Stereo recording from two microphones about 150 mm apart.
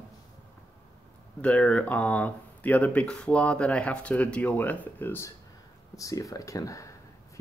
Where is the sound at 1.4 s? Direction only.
10° left (ahead or behind).